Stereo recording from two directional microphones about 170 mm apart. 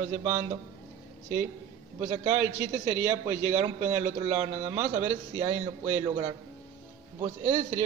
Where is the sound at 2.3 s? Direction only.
15° right (ahead or behind).